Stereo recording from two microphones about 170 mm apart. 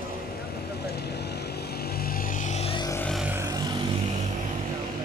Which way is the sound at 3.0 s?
Centre (ahead or behind).